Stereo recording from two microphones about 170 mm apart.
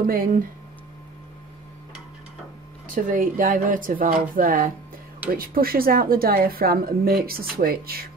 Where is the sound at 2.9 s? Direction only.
55° right (ahead or behind).